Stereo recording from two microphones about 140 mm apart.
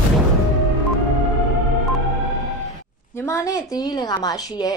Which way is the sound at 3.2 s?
20° left (ahead or behind).